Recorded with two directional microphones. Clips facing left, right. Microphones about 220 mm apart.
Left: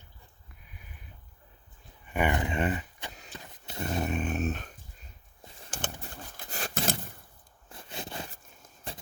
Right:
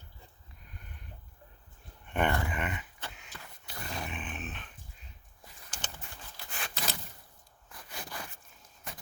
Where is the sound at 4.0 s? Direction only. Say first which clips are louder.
Left 11 dB; 45° left (ahead or behind).